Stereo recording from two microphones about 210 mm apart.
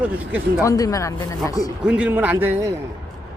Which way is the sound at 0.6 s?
15° left (ahead or behind).